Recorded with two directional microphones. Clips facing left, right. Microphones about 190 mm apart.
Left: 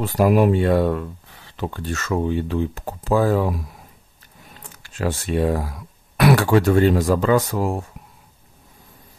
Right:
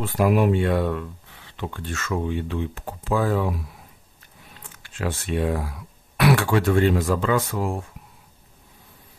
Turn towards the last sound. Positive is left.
turn(degrees=40)  # may be behind; listen again after turning